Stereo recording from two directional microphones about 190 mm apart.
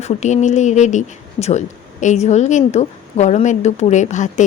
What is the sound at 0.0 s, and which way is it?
Speech, 40° left (ahead or behind).